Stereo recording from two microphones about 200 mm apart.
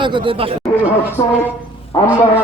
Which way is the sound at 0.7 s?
10° right (ahead or behind).